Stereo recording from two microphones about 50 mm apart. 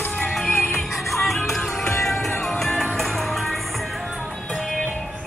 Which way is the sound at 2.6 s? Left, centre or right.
Centre.